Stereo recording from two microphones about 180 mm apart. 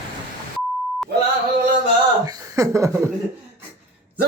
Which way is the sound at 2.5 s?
15° right (ahead or behind).